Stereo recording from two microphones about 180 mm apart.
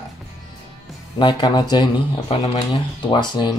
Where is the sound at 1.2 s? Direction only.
25° left (ahead or behind).